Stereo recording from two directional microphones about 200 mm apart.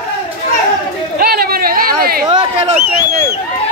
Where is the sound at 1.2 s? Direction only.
50° right (ahead or behind).